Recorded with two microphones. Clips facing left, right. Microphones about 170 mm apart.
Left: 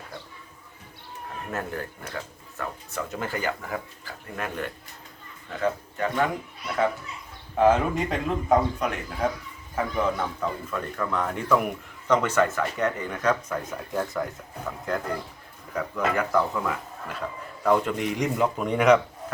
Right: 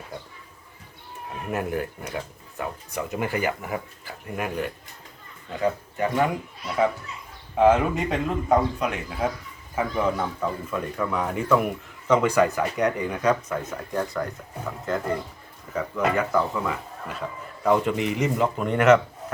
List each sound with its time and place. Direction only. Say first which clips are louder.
1.5 s speech: right 5 dB; 15° right (ahead or behind)
7.5 s speech: right 2 dB; 5° right (ahead or behind)